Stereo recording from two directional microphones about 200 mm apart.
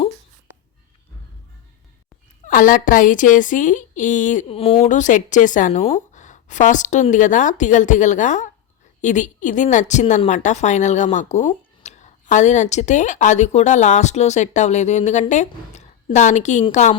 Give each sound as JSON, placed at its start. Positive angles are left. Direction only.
{"t": 2.5, "sound": "a woman's voice", "side_deg": 40}